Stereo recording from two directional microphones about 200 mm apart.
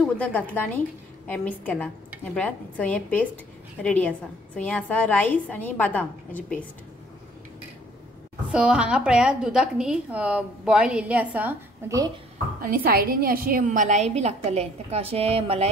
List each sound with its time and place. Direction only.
0.0 s a woman's voice: 5° left (ahead or behind)
8.5 s a woman's voice: 5° right (ahead or behind)
12.5 s a woman's voice: 45° right (ahead or behind); by 15.7 s 30° right (ahead or behind)